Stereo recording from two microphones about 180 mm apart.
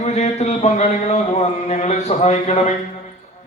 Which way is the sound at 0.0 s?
40° left (ahead or behind).